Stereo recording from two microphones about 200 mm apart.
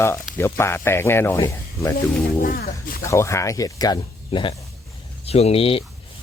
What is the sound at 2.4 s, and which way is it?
Speech, 45° left (ahead or behind).